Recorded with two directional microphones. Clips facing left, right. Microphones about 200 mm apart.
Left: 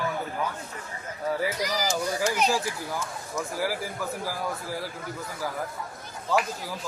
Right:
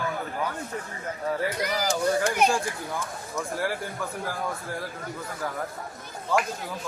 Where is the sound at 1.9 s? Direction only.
55° right (ahead or behind).